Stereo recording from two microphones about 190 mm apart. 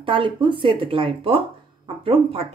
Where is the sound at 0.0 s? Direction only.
25° right (ahead or behind).